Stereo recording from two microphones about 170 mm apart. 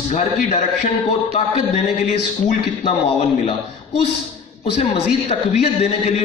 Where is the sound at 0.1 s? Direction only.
40° left (ahead or behind).